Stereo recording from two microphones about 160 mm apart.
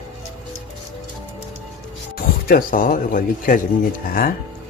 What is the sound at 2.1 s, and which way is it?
Speech, 65° left (ahead or behind).